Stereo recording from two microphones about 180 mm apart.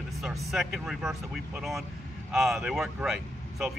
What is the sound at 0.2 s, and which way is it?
Speech, centre (ahead or behind).